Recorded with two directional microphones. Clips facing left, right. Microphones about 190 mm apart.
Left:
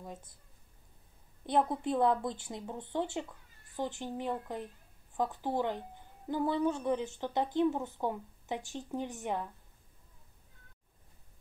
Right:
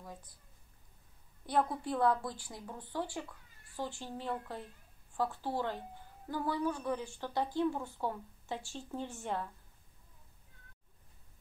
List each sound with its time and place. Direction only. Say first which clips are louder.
0.0 s speech: left 3 dB; 25° left (ahead or behind)
1.4 s a woman's voice: left 3 dB; 20° left (ahead or behind)